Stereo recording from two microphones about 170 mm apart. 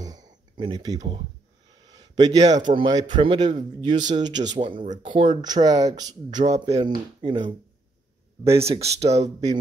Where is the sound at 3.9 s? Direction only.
45° right (ahead or behind).